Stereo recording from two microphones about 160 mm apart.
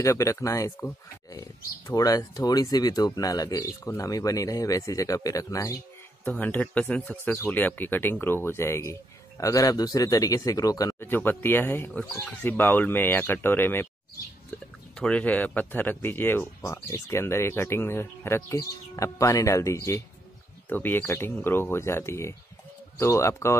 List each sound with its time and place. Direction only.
0.0 s speech: 20° left (ahead or behind)
6.2 s speech: 10° left (ahead or behind)
15.0 s speech: 5° left (ahead or behind)